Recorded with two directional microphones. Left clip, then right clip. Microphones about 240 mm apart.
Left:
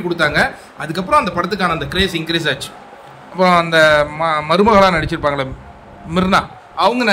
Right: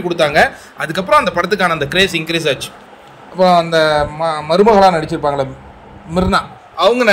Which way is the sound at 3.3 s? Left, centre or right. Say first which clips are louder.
Right 1 dB; left.